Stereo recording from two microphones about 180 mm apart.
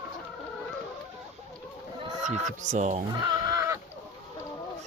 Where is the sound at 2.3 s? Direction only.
40° right (ahead or behind).